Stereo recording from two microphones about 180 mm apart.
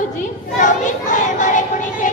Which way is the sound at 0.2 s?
45° left (ahead or behind).